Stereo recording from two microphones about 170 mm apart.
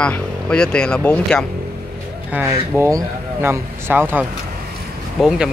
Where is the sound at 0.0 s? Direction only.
5° left (ahead or behind).